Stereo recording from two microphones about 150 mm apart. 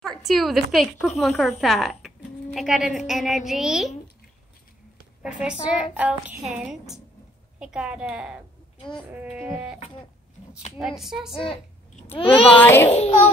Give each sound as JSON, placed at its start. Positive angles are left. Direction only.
{"t": 0.0, "sound": "a woman's voice", "side_deg": 0}
{"t": 5.2, "sound": "a woman's voice", "side_deg": -5}
{"t": 8.7, "sound": "a sound", "side_deg": 35}
{"t": 9.1, "sound": "a woman's voice", "side_deg": -10}
{"t": 10.8, "sound": "a woman's voice", "side_deg": 0}
{"t": 11.4, "sound": "a sound", "side_deg": 35}
{"t": 12.2, "sound": "a child's voice", "side_deg": 35}
{"t": 12.6, "sound": "a child's voice", "side_deg": 15}
{"t": 12.9, "sound": "a child's voice", "side_deg": 50}